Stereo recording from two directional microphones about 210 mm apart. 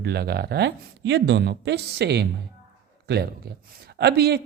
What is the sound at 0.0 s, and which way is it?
Speech, 50° right (ahead or behind).